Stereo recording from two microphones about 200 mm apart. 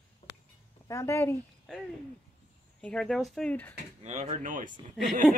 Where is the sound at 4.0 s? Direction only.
35° right (ahead or behind).